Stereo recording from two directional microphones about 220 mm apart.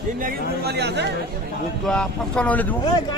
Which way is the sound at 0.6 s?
50° right (ahead or behind).